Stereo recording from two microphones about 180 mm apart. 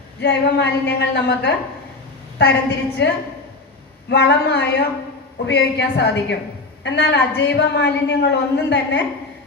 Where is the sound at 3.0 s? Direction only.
70° left (ahead or behind).